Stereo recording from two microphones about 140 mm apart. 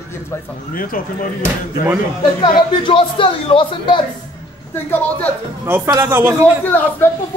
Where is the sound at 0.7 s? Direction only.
90° left.